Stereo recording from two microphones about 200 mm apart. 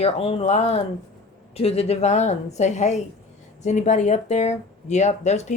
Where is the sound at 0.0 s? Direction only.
30° left (ahead or behind).